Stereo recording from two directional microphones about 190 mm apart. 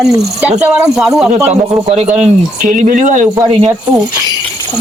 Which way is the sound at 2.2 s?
40° right (ahead or behind).